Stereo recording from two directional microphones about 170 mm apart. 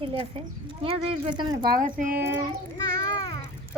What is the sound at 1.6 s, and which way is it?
Speech, 55° right (ahead or behind).